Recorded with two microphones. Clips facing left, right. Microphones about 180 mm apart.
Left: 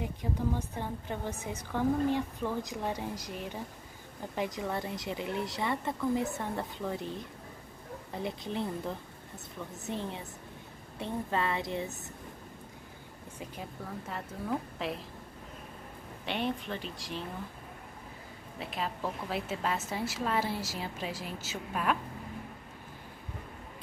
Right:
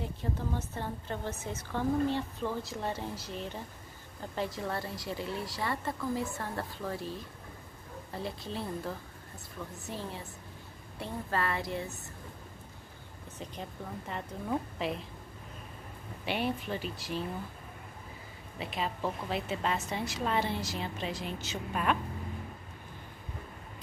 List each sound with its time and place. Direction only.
0.0 s a woman's voice: 15° left (ahead or behind)
13.4 s a woman's voice: 5° left (ahead or behind)
16.3 s a woman's voice: 5° right (ahead or behind)
18.6 s a woman's voice: centre (ahead or behind)